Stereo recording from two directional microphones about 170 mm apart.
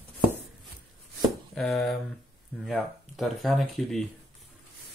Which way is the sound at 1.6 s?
Centre (ahead or behind).